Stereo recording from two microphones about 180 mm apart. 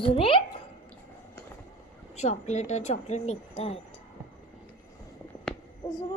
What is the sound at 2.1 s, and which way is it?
Speech, 40° left (ahead or behind).